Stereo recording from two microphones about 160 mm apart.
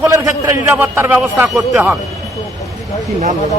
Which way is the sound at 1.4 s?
Centre (ahead or behind).